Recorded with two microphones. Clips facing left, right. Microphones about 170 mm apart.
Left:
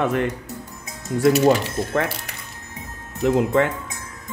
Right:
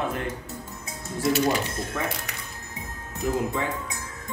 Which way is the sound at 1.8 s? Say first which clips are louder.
Left 7 dB; 75° left (ahead or behind).